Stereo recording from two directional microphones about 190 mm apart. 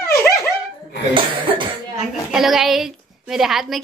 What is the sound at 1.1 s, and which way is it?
Cough, 25° right (ahead or behind).